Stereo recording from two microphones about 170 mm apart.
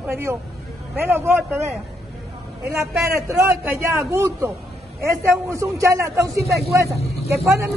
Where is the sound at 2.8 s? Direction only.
15° right (ahead or behind).